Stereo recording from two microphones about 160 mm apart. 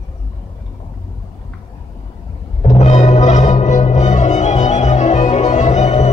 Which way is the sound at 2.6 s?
45° left (ahead or behind).